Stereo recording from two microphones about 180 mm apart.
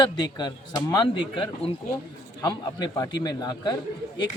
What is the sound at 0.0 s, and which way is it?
Speech, 25° left (ahead or behind).